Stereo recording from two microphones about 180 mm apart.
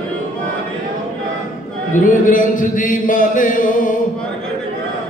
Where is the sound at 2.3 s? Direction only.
50° left (ahead or behind).